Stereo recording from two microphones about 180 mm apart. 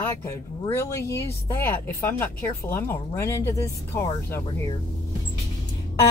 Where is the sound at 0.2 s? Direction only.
15° left (ahead or behind).